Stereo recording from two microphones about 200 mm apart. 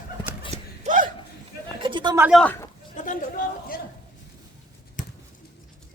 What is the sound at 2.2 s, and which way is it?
Speech, centre (ahead or behind).